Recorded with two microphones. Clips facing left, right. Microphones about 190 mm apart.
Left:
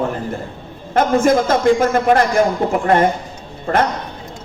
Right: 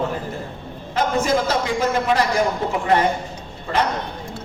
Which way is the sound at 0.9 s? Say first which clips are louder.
Left 6 dB; 50° left (ahead or behind).